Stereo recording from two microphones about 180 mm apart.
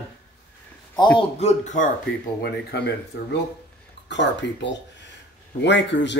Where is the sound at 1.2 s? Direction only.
35° left (ahead or behind).